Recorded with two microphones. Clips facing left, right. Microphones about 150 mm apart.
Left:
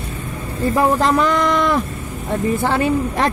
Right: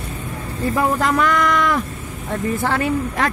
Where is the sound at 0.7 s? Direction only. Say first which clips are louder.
Left 3 dB; 30° left (ahead or behind).